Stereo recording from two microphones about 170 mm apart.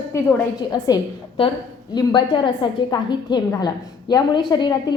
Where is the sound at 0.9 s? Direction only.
20° left (ahead or behind).